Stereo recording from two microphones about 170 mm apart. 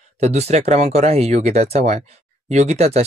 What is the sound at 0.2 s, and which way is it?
Speech, 40° right (ahead or behind).